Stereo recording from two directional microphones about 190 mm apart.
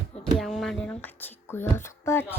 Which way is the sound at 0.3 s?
Centre (ahead or behind).